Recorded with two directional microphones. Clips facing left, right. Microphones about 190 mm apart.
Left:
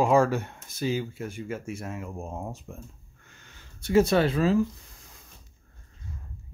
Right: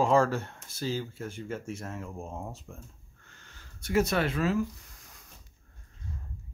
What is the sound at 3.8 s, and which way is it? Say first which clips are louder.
Speech: left 6 dB; 30° left (ahead or behind).